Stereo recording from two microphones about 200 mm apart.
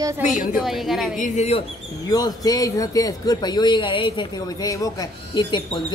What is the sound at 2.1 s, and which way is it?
Speech, 20° left (ahead or behind).